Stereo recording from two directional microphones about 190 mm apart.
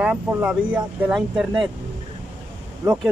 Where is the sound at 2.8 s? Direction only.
15° right (ahead or behind).